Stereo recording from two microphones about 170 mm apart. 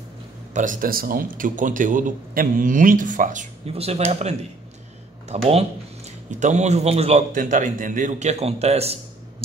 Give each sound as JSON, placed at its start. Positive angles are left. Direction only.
{"t": 0.5, "sound": "speech", "side_deg": -50}
{"t": 3.6, "sound": "speech", "side_deg": -35}
{"t": 7.3, "sound": "speech", "side_deg": -50}